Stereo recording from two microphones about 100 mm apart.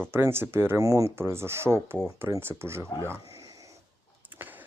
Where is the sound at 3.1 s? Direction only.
35° right (ahead or behind).